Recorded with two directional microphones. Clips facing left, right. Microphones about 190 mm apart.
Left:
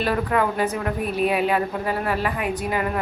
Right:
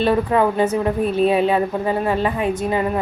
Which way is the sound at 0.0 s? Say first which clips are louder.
Right 5 dB; 25° right (ahead or behind).